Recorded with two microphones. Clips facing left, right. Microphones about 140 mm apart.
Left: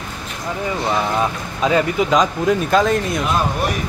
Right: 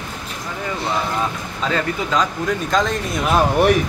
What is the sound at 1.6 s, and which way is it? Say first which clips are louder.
Speech: left 5 dB; 15° left (ahead or behind).